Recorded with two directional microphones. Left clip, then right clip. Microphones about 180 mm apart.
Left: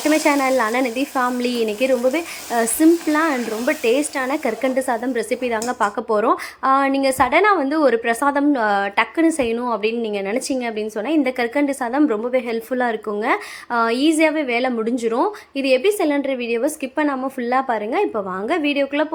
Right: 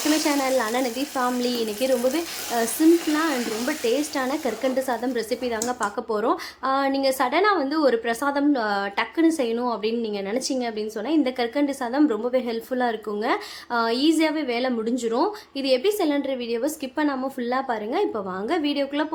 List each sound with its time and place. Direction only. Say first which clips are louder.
0.3 s speech: left 5 dB; 25° left (ahead or behind)